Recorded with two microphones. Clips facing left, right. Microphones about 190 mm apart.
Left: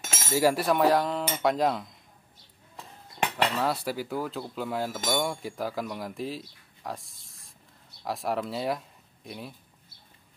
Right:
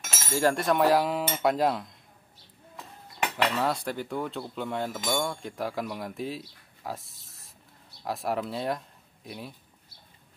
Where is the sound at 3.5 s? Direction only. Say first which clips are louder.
Even; 5° left (ahead or behind).